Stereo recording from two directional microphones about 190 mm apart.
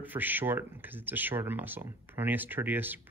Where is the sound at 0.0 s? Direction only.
10° right (ahead or behind).